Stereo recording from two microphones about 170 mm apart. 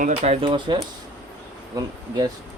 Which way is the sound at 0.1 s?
35° right (ahead or behind).